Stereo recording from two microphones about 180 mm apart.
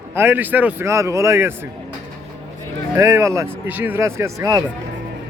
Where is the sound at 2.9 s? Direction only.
15° right (ahead or behind).